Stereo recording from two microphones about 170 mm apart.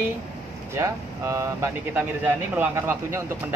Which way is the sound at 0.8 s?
15° right (ahead or behind).